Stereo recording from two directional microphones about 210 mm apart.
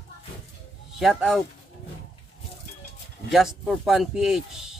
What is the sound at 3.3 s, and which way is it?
Speech, centre (ahead or behind).